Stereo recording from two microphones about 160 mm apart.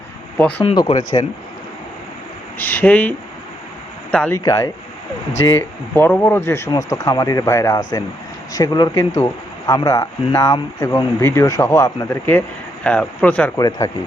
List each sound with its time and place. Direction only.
0.6 s speech: 35° left (ahead or behind)
2.6 s speech: 10° left (ahead or behind)
4.4 s speech: 20° left (ahead or behind)
13.6 s speech: 25° left (ahead or behind)